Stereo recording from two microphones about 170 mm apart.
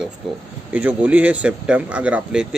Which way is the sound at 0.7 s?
10° right (ahead or behind).